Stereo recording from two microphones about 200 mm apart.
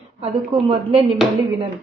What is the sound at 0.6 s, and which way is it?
Speech, 25° right (ahead or behind).